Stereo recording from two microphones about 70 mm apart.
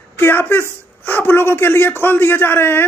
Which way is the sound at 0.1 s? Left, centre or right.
Left.